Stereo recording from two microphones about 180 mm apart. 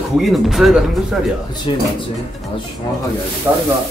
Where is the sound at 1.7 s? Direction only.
25° left (ahead or behind).